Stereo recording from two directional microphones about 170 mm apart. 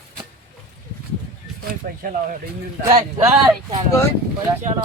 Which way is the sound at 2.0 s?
55° right (ahead or behind).